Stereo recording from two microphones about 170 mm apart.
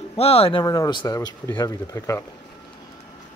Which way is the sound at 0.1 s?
35° left (ahead or behind).